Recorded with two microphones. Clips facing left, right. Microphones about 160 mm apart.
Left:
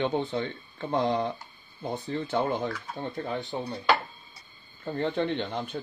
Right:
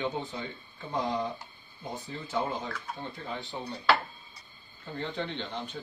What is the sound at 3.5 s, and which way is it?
Speech, 45° left (ahead or behind).